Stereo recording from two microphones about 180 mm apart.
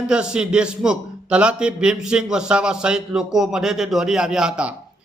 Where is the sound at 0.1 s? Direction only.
5° right (ahead or behind).